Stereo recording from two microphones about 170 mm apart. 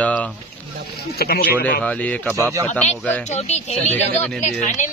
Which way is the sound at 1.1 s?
65° left (ahead or behind).